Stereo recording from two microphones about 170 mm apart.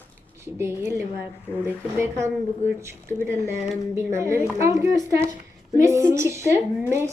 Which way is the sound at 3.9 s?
15° right (ahead or behind).